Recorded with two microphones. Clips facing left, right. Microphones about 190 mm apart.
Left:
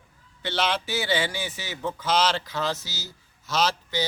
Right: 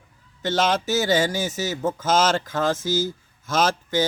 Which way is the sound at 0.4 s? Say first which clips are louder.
Right 5 dB; 45° right (ahead or behind).